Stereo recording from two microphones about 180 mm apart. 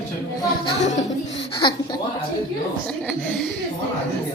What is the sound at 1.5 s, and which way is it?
Speech, 25° left (ahead or behind).